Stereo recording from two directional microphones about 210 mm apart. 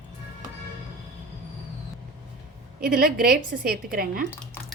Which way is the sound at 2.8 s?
40° right (ahead or behind).